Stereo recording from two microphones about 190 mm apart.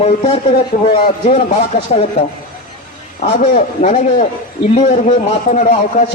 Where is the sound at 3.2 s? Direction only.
40° left (ahead or behind).